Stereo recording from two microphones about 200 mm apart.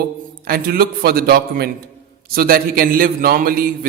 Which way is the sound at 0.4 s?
50° right (ahead or behind).